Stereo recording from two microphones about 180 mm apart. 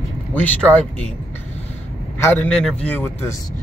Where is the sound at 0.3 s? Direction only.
10° left (ahead or behind).